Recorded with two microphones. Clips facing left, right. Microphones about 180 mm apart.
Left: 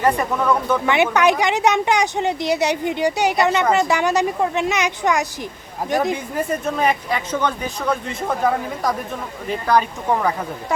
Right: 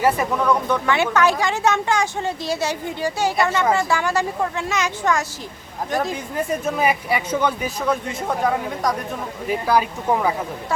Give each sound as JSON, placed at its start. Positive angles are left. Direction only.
{"t": 0.0, "sound": "speech", "side_deg": -5}
{"t": 0.9, "sound": "speech", "side_deg": 15}
{"t": 6.3, "sound": "speech", "side_deg": 0}
{"t": 9.5, "sound": "speech", "side_deg": -10}